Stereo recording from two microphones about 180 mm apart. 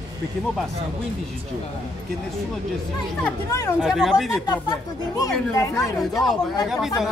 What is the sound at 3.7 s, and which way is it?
Speech, centre (ahead or behind).